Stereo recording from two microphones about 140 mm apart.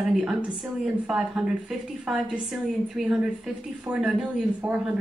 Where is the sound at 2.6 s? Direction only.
5° right (ahead or behind).